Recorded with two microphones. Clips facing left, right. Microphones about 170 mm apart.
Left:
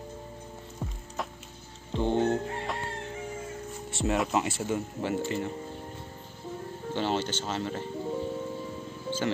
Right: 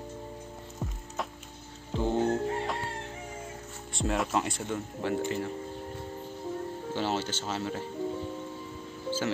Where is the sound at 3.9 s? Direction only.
Centre (ahead or behind).